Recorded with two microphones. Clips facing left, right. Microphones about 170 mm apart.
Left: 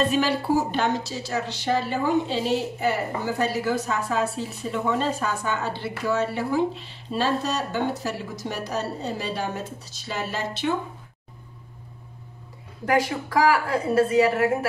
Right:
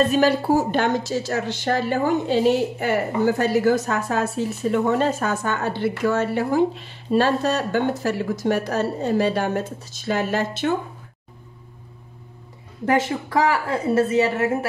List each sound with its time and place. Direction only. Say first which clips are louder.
0.1 s a woman's voice: right 4 dB; 45° right (ahead or behind)
12.8 s a woman's voice: right 2 dB; 25° right (ahead or behind)